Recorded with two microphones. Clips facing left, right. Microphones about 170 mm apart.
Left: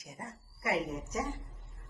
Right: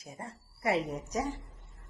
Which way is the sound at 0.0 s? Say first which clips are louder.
Right 2 dB; 30° right (ahead or behind).